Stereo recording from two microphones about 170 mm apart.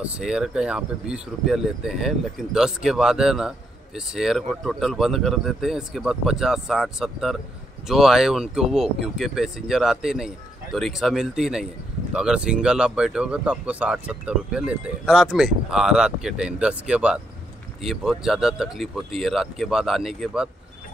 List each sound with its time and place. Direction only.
0.0 s speech: 5° right (ahead or behind)